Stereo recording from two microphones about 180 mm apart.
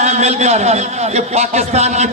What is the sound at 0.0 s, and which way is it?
A man's voice, 40° right (ahead or behind).